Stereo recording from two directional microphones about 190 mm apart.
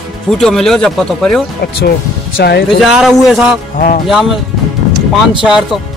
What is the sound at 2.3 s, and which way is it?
Speech, 55° left (ahead or behind).